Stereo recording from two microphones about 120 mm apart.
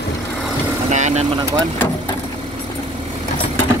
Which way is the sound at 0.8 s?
75° right (ahead or behind).